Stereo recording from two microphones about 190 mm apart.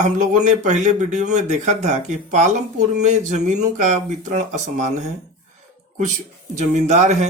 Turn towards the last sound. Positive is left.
turn(degrees=-35)  # may be behind; listen again after turning